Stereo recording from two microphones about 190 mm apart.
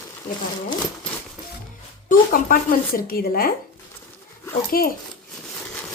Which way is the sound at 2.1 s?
45° left (ahead or behind).